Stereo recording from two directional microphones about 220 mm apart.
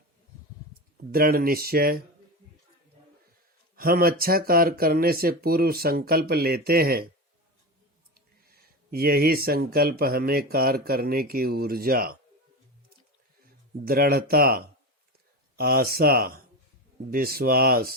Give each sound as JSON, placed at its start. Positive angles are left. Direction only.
{"t": 0.7, "sound": "speech", "side_deg": -40}
{"t": 3.8, "sound": "speech", "side_deg": -40}
{"t": 8.9, "sound": "speech", "side_deg": -45}
{"t": 13.8, "sound": "speech", "side_deg": -45}